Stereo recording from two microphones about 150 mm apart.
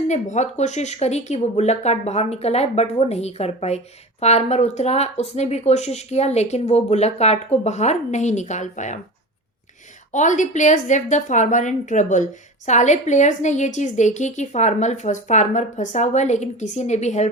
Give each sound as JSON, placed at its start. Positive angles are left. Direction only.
{"t": 0.1, "sound": "a woman's voice", "side_deg": 50}
{"t": 10.1, "sound": "a woman's voice", "side_deg": 55}